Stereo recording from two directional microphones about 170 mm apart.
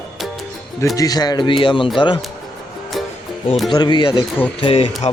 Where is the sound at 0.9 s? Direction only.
20° left (ahead or behind).